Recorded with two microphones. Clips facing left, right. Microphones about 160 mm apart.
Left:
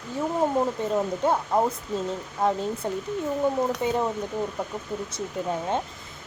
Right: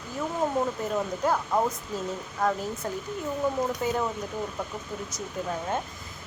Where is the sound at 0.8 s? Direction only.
25° left (ahead or behind).